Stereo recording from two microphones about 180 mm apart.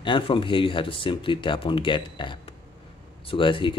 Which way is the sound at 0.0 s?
25° left (ahead or behind).